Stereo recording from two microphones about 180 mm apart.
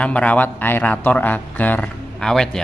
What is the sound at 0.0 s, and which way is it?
A man's voice, 5° left (ahead or behind).